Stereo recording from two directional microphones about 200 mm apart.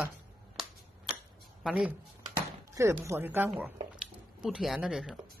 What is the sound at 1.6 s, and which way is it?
Speech, centre (ahead or behind).